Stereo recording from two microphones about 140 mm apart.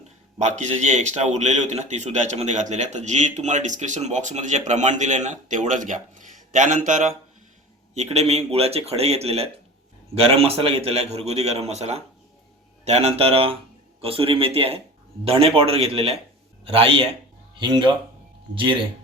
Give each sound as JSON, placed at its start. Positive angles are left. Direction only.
{"t": 0.3, "sound": "a man's voice", "side_deg": -60}
{"t": 7.9, "sound": "a man's voice", "side_deg": -50}